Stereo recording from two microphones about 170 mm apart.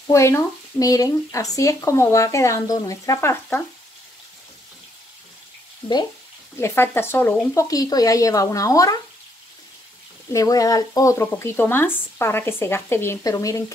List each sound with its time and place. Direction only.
0.1 s speech: 15° left (ahead or behind)
5.8 s speech: 30° left (ahead or behind)
6.6 s a woman's voice: 15° left (ahead or behind)
10.3 s speech: 20° left (ahead or behind)